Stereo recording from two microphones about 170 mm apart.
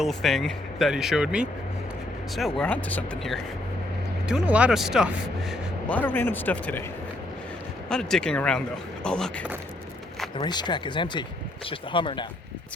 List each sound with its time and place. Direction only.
0.0 s speech: centre (ahead or behind)
4.3 s speech: 5° right (ahead or behind)
5.9 s speech: 10° left (ahead or behind)
7.9 s speech: 5° left (ahead or behind)
10.3 s speech: 25° left (ahead or behind)